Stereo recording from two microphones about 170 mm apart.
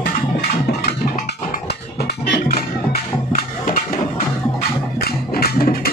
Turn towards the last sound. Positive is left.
turn(degrees=60)  # may be behind; listen again after turning